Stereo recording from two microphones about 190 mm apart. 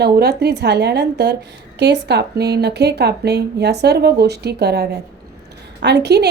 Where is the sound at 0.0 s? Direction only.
60° right (ahead or behind).